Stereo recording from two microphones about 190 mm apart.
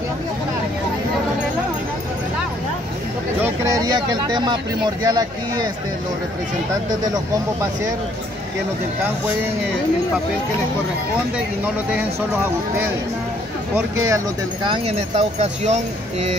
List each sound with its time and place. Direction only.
3.3 s speech: 15° right (ahead or behind)
11.3 s speech: 10° right (ahead or behind)
13.7 s speech: 15° right (ahead or behind); by 16.3 s 35° right (ahead or behind)